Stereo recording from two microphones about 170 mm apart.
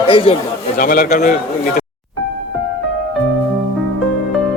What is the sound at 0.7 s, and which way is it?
Speech, 55° left (ahead or behind).